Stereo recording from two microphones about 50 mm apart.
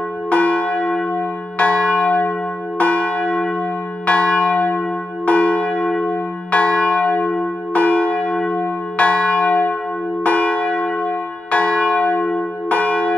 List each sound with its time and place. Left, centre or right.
0.3 s church bell: left